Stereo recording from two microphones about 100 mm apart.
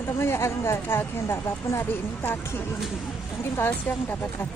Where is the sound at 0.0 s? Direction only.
25° left (ahead or behind).